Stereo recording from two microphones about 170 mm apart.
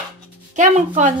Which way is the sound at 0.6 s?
45° right (ahead or behind).